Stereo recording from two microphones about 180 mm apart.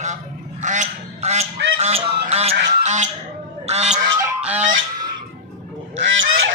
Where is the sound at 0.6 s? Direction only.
40° right (ahead or behind).